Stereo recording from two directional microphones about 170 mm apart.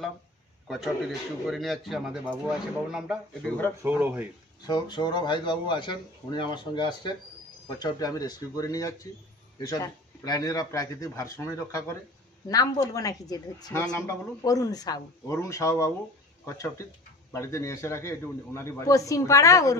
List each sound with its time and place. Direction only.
0.7 s speech: centre (ahead or behind)
3.4 s a man's voice: 10° left (ahead or behind)
3.8 s speech: 10° right (ahead or behind)
4.6 s a man's voice: 25° left (ahead or behind)